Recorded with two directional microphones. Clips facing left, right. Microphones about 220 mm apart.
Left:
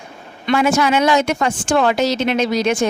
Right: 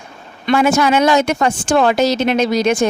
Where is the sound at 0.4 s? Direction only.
45° right (ahead or behind).